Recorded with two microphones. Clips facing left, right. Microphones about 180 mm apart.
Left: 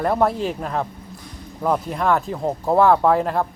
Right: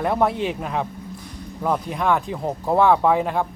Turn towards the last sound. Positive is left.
turn(degrees=0)  # may be behind; listen again after turning